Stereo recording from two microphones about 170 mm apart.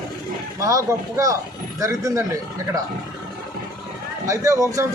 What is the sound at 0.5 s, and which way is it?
A man's voice, 20° right (ahead or behind).